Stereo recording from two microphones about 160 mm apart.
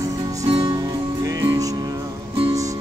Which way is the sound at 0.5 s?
30° right (ahead or behind).